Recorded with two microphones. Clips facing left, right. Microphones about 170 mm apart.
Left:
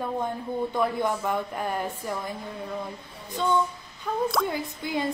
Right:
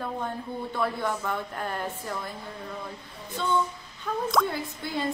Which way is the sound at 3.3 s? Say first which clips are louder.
Left 2 dB; 10° left (ahead or behind).